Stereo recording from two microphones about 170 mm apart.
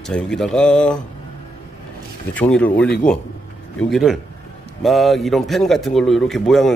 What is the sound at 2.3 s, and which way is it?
Speech, 10° left (ahead or behind).